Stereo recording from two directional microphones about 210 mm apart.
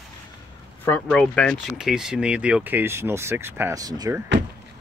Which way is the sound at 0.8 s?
5° left (ahead or behind).